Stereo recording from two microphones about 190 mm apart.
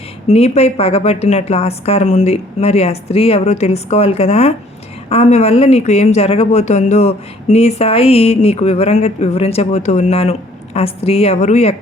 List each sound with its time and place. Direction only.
0.3 s speech: 35° left (ahead or behind)